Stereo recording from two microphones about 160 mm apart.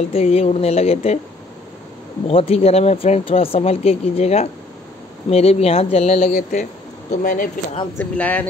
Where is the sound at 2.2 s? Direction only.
40° left (ahead or behind).